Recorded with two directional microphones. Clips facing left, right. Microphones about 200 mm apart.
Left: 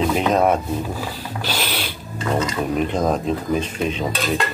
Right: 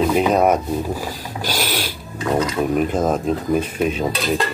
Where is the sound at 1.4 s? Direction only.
45° right (ahead or behind).